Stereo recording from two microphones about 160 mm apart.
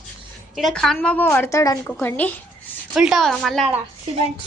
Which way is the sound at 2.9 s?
5° right (ahead or behind).